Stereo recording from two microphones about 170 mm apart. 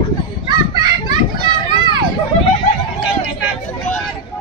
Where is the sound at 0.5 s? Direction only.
25° right (ahead or behind).